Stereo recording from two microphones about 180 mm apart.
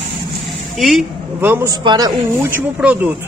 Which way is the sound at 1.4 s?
15° right (ahead or behind).